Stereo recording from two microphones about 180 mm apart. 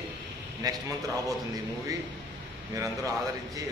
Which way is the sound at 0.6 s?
20° right (ahead or behind).